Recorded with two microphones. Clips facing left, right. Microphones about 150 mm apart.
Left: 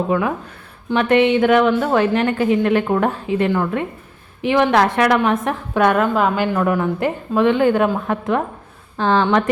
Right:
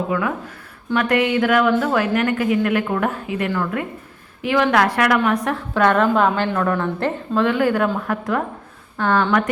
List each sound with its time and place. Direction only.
0.1 s a woman's voice: 25° left (ahead or behind)
6.0 s a woman's voice: 5° left (ahead or behind); by 9.4 s 20° left (ahead or behind)